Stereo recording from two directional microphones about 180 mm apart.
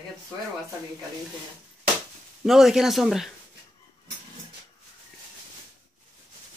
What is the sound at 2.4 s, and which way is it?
Speech, centre (ahead or behind).